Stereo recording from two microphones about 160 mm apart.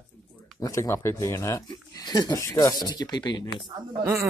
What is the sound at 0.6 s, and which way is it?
Speech, 20° left (ahead or behind).